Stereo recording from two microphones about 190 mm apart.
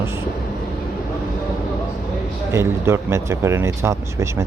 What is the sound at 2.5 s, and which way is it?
Speech, 15° right (ahead or behind).